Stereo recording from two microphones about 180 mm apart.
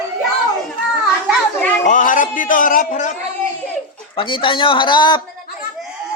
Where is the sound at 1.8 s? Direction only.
45° left (ahead or behind).